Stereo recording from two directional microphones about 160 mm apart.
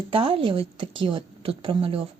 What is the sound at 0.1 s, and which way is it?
A woman's voice, 35° right (ahead or behind).